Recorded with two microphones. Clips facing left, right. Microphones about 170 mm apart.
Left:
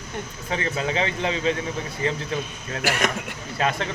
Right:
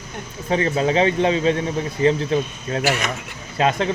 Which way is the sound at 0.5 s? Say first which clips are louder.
Right 7 dB; 30° right (ahead or behind).